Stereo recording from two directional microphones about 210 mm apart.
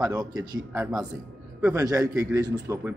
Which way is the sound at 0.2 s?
20° right (ahead or behind).